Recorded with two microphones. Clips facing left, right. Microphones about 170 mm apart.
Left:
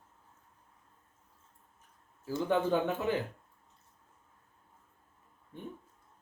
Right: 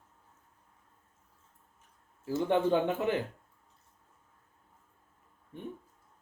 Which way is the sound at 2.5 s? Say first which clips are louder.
Right 2 dB; 20° right (ahead or behind).